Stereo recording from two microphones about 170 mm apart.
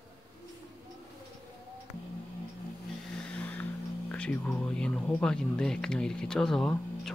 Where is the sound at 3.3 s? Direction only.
10° left (ahead or behind).